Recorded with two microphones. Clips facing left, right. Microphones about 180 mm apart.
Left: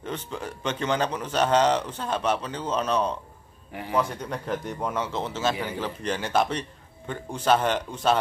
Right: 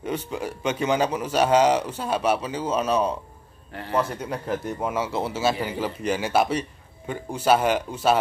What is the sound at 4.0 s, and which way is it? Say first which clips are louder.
Speech: right 1 dB; 5° right (ahead or behind).